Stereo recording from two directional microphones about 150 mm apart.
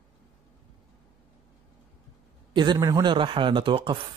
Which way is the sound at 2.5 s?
30° right (ahead or behind).